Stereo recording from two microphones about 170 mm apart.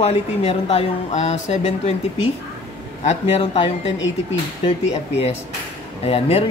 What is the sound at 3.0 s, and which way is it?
Speech, 40° left (ahead or behind).